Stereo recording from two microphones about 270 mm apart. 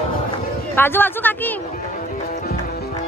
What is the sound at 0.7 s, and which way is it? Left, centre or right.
Speech, centre.